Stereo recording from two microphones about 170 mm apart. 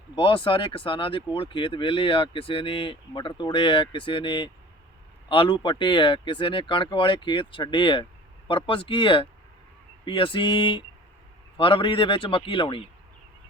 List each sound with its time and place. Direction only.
0.2 s a man's voice: 30° left (ahead or behind)